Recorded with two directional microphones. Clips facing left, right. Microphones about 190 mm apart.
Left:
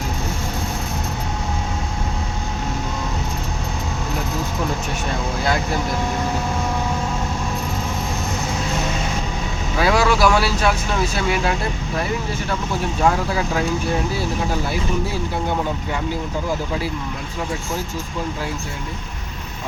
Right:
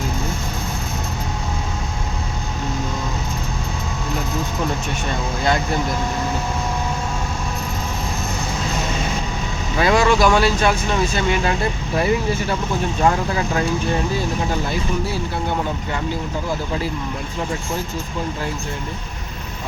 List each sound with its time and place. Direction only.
9.7 s speech: 5° left (ahead or behind)
13.0 s speech: 5° left (ahead or behind)